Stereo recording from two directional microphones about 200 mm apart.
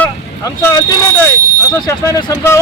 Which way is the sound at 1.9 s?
15° left (ahead or behind).